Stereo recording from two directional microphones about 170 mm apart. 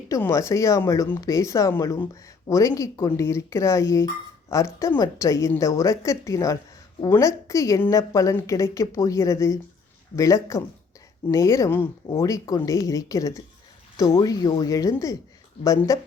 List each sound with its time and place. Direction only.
0.1 s speech: 15° left (ahead or behind)